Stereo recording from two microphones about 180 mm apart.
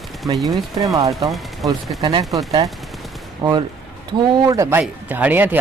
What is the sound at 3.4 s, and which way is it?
Speech, 20° right (ahead or behind).